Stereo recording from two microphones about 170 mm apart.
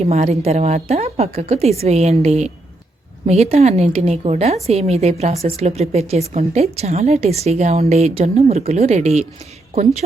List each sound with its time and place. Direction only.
0.0 s a woman's voice: 40° right (ahead or behind)